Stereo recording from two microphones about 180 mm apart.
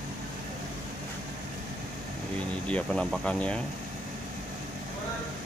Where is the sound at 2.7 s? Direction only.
5° left (ahead or behind).